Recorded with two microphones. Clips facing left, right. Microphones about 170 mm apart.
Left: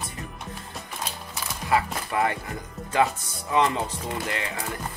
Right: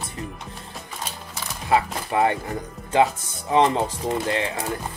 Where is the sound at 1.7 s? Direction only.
25° right (ahead or behind).